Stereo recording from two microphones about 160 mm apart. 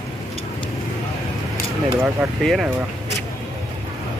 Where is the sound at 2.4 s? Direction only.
Centre (ahead or behind).